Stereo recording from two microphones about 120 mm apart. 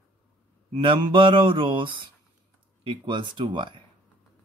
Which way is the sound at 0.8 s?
45° right (ahead or behind).